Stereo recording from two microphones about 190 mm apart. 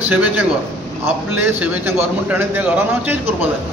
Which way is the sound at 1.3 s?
10° right (ahead or behind).